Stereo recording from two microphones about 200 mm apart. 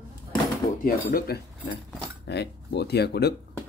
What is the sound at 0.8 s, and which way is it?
Speech, 45° left (ahead or behind).